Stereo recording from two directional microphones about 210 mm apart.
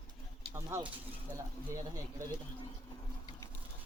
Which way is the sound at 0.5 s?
10° right (ahead or behind).